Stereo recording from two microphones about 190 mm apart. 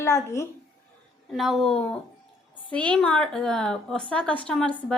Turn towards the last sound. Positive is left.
turn(degrees=5)  # may be behind; listen again after turning